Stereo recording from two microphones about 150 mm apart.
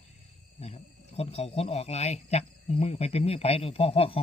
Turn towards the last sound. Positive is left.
turn(degrees=40)  # may be behind; listen again after turning